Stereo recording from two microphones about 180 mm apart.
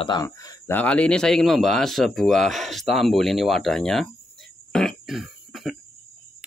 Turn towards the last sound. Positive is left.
turn(degrees=0)  # may be behind; listen again after turning